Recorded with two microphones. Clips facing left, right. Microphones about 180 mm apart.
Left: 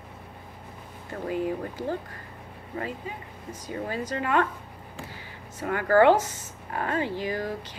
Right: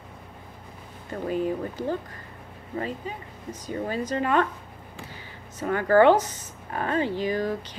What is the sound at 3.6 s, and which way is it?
Speech, 25° right (ahead or behind).